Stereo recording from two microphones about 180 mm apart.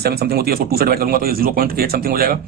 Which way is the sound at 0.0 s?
60° right (ahead or behind).